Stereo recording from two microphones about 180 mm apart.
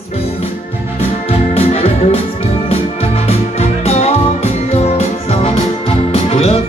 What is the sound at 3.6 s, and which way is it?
Music, 35° left (ahead or behind).